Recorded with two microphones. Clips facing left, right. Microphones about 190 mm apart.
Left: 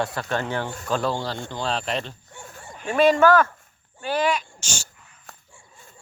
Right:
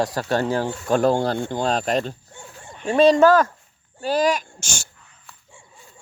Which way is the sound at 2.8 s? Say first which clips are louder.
Right 3 dB; 35° right (ahead or behind).